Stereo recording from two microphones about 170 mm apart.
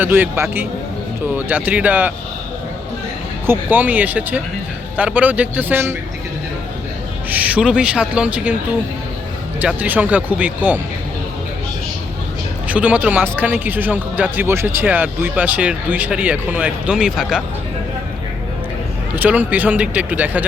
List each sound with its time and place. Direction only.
0.0 s speech: 10° right (ahead or behind)
3.4 s speech: 10° right (ahead or behind)
7.3 s speech: 10° right (ahead or behind)
9.6 s speech: 10° right (ahead or behind)
12.6 s speech: 10° right (ahead or behind)
19.1 s speech: 10° right (ahead or behind)